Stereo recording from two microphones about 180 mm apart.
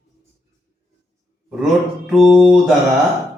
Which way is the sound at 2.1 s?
Centre (ahead or behind).